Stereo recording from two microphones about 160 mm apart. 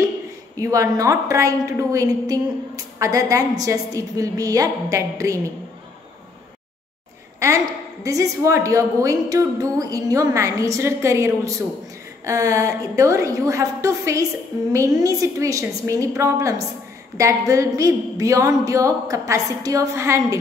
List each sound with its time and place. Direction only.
0.6 s a woman's voice: 20° right (ahead or behind)
7.3 s a woman's voice: 20° right (ahead or behind)